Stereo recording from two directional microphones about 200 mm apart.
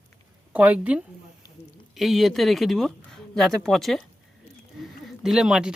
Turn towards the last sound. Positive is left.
turn(degrees=-5)  # may be behind; listen again after turning